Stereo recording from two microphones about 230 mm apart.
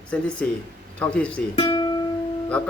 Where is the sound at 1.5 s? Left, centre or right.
Centre.